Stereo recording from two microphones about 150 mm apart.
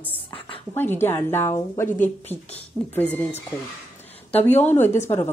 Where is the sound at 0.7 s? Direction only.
15° left (ahead or behind).